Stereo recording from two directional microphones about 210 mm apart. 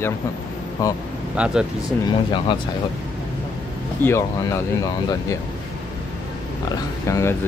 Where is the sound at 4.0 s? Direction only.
10° left (ahead or behind).